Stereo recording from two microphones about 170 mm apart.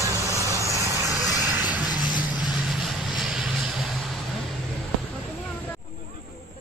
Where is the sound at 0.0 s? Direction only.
20° right (ahead or behind).